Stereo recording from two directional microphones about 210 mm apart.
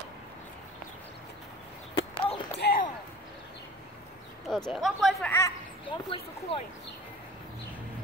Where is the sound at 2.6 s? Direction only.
50° left (ahead or behind).